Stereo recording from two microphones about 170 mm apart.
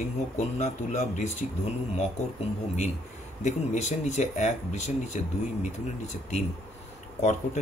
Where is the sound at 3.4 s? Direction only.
40° left (ahead or behind).